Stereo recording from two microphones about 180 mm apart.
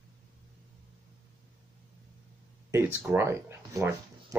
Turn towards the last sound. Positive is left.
turn(degrees=-15)  # may be behind; listen again after turning